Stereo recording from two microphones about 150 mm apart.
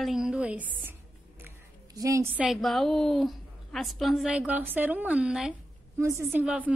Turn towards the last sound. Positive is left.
turn(degrees=-10)  # may be behind; listen again after turning